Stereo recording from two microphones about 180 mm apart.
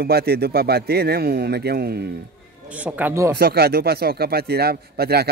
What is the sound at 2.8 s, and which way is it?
Speech, 10° right (ahead or behind).